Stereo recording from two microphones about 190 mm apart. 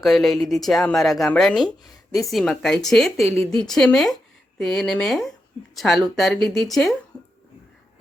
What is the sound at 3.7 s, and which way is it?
Speech, centre (ahead or behind).